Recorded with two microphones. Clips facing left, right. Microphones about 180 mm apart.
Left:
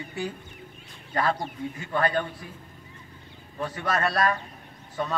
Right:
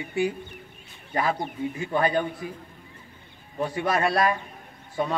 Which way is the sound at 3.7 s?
10° right (ahead or behind).